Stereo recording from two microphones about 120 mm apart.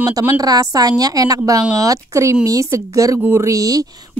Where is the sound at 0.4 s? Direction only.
30° right (ahead or behind).